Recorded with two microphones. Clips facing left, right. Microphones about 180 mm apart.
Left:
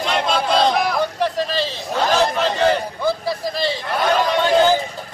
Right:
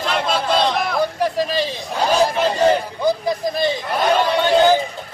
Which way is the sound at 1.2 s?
10° right (ahead or behind).